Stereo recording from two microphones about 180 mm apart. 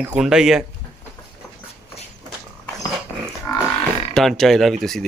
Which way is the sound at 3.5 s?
20° left (ahead or behind).